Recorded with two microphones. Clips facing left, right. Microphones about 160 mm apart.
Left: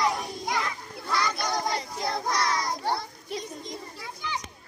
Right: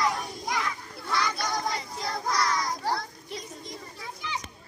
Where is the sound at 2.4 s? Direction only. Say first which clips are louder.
Left 1 dB; 25° left (ahead or behind).